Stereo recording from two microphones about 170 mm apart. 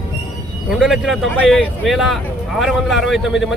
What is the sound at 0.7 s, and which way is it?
Speech, centre (ahead or behind).